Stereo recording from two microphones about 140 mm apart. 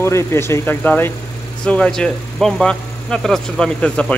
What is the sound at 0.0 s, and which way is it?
Speech, 20° left (ahead or behind).